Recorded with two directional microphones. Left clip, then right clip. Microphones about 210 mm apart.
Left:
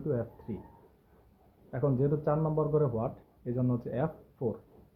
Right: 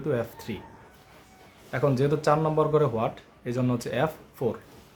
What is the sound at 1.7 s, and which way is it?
A man's voice, 10° right (ahead or behind).